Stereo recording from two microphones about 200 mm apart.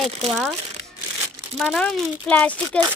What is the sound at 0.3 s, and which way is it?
Speech, centre (ahead or behind).